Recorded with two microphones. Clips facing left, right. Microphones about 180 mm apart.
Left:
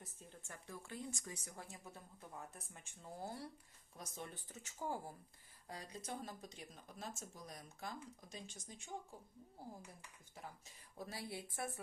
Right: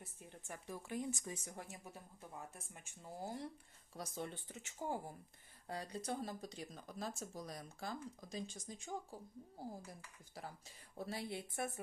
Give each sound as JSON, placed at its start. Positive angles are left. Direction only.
{"t": 0.0, "sound": "speech", "side_deg": -15}
{"t": 2.6, "sound": "speech", "side_deg": -10}
{"t": 3.9, "sound": "speech", "side_deg": -30}
{"t": 10.9, "sound": "speech", "side_deg": -25}